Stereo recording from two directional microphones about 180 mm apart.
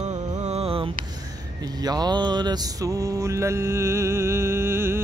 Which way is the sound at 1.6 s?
20° right (ahead or behind).